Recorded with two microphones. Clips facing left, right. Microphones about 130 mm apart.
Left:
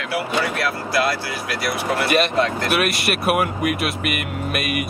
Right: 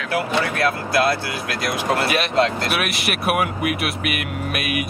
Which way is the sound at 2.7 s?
Centre (ahead or behind).